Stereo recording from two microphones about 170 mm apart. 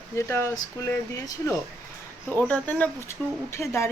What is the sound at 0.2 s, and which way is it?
Speech, 15° left (ahead or behind).